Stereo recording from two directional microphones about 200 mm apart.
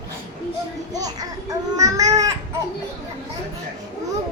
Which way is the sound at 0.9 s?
20° right (ahead or behind).